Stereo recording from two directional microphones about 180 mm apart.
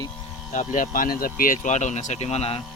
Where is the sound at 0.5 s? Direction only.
45° left (ahead or behind).